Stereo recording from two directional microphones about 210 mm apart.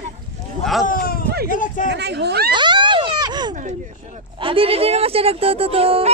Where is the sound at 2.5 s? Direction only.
20° right (ahead or behind).